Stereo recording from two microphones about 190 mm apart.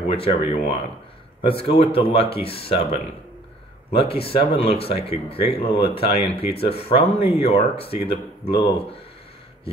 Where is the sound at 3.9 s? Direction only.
30° left (ahead or behind).